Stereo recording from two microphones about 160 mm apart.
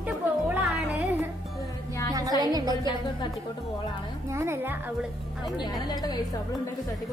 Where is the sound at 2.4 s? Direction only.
25° right (ahead or behind).